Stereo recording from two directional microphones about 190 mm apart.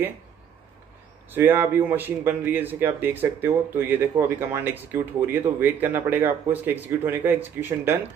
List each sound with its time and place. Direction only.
1.3 s speech: 10° right (ahead or behind)